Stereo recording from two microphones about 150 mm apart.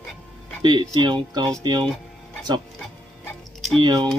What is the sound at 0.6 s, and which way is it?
Speech, 30° right (ahead or behind).